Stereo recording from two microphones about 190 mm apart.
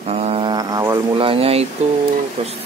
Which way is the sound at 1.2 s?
30° right (ahead or behind).